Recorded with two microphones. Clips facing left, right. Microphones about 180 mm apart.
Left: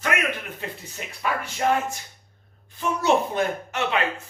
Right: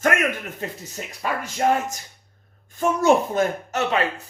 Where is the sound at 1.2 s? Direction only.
40° right (ahead or behind).